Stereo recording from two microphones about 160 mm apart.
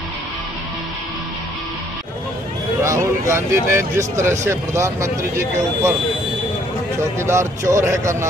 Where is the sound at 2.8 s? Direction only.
20° right (ahead or behind).